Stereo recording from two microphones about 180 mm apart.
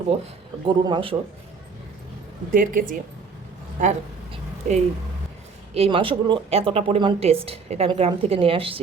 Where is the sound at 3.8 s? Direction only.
45° right (ahead or behind).